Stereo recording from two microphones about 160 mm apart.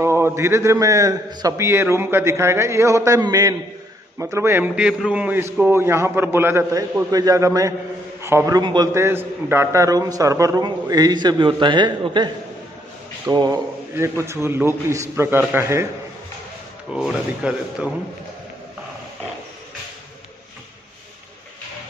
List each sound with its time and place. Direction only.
0.0 s a man's voice: 15° right (ahead or behind)
16.9 s speech: 5° right (ahead or behind)